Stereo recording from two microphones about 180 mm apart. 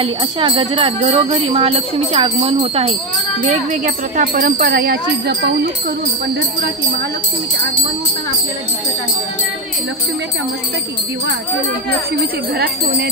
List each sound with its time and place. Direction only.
0.0 s jingle bell: 30° right (ahead or behind)
3.4 s speech: 45° right (ahead or behind)